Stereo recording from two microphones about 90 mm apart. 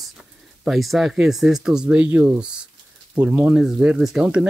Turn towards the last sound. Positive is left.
turn(degrees=-10)  # may be behind; listen again after turning